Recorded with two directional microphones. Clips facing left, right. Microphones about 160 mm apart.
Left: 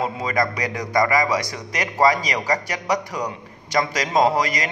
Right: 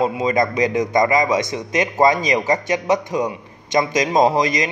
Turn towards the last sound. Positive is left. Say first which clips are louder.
# right 3 dB
turn(degrees=-20)  # may be behind; listen again after turning